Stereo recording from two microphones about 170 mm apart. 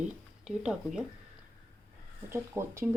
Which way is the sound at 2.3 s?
15° right (ahead or behind).